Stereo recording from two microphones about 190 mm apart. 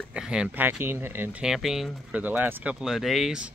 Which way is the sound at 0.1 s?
5° right (ahead or behind).